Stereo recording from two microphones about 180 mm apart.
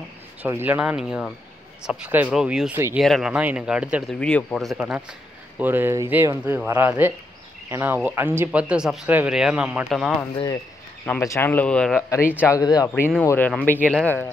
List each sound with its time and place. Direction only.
0.4 s speech: 10° right (ahead or behind)
4.2 s speech: 5° left (ahead or behind)
10.3 s speech: 20° left (ahead or behind); by 12.0 s 5° left (ahead or behind)
12.4 s speech: 15° left (ahead or behind)